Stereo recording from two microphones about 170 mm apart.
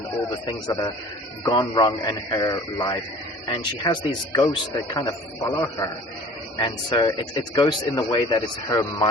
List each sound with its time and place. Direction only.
0.4 s speech: 20° left (ahead or behind)